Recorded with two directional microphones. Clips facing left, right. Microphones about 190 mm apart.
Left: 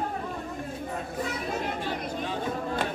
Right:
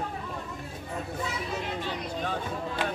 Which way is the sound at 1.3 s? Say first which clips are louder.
Left 2 dB; 50° left (ahead or behind).